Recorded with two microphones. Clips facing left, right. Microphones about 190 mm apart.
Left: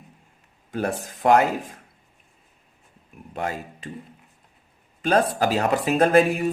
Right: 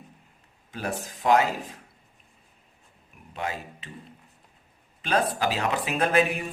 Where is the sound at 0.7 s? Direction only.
50° left (ahead or behind).